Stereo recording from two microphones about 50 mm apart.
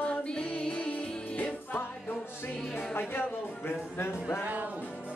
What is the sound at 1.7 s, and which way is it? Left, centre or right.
Music, left.